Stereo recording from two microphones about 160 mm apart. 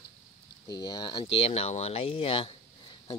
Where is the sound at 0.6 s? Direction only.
25° left (ahead or behind).